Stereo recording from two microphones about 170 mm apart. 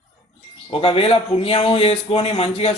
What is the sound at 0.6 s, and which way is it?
Speech, 30° left (ahead or behind).